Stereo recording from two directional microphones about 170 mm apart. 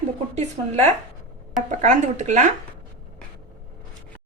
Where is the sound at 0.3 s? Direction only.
40° right (ahead or behind).